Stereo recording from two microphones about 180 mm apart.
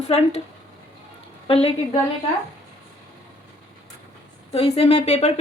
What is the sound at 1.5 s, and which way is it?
Speech, 35° left (ahead or behind).